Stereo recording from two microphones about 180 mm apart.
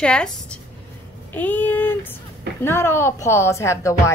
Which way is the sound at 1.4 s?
10° left (ahead or behind).